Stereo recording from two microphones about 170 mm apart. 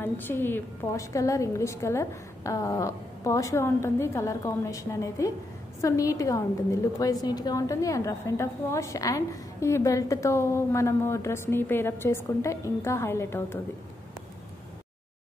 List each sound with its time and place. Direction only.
0.0 s a woman's voice: 10° left (ahead or behind)